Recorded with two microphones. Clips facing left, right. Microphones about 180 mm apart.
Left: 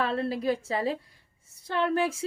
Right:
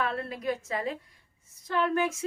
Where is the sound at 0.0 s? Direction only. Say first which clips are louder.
Left 4 dB; 30° left (ahead or behind).